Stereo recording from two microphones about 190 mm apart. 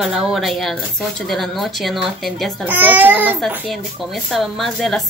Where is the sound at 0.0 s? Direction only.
5° right (ahead or behind).